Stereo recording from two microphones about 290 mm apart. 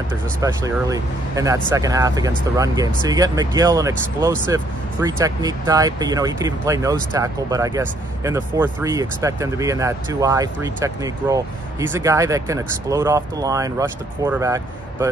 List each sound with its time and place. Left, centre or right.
0.4 s speech: centre